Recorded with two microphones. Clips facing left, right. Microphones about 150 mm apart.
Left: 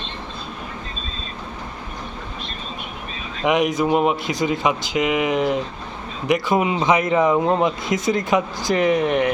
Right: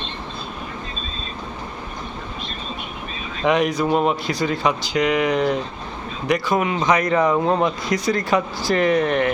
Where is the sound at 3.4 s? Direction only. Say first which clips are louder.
Even; 20° left (ahead or behind).